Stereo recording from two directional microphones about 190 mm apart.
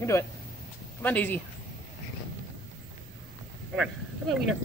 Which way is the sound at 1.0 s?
10° left (ahead or behind).